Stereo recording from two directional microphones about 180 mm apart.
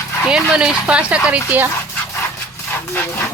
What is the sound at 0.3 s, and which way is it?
Speech, 5° right (ahead or behind).